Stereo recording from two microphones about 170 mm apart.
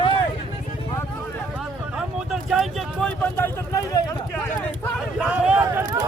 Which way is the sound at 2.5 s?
Centre (ahead or behind).